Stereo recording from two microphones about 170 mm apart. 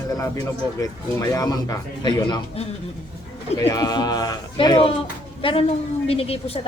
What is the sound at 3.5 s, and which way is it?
A man's voice, 20° left (ahead or behind).